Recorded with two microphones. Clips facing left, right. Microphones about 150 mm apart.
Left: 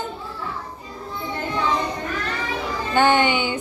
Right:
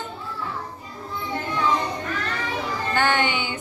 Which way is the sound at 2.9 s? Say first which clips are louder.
Left 5 dB; 20° left (ahead or behind).